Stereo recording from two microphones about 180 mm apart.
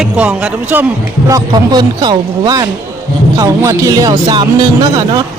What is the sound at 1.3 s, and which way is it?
Speech, 20° right (ahead or behind).